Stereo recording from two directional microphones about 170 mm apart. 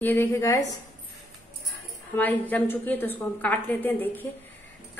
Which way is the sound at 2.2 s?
10° left (ahead or behind).